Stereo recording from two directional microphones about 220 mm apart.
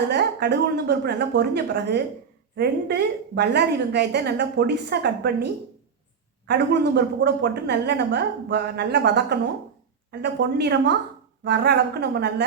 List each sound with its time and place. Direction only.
0.1 s a woman's voice: 50° right (ahead or behind)